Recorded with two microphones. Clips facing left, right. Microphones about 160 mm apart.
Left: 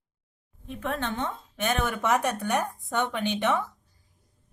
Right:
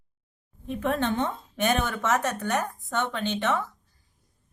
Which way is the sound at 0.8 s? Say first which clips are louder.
Right 4 dB; 25° right (ahead or behind).